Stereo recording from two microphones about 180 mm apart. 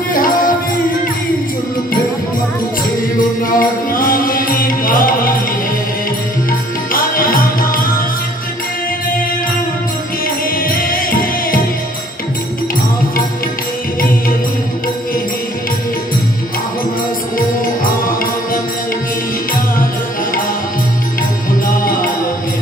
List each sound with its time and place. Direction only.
0.1 s music: 50° left (ahead or behind)
3.2 s music: 50° left (ahead or behind)
6.9 s music: 50° left (ahead or behind)
10.6 s music: 50° left (ahead or behind)
17.4 s music: 50° left (ahead or behind)
21.6 s music: 50° left (ahead or behind)